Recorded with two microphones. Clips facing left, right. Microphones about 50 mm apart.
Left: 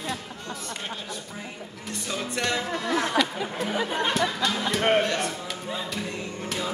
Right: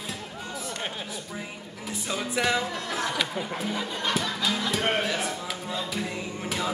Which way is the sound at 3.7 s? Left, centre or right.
Left.